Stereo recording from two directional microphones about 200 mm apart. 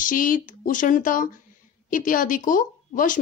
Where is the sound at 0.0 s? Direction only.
40° left (ahead or behind).